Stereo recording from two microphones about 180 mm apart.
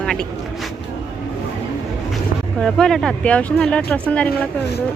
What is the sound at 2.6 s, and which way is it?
Speech, 5° left (ahead or behind).